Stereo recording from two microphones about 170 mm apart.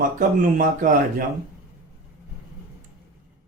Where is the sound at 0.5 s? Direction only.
50° right (ahead or behind).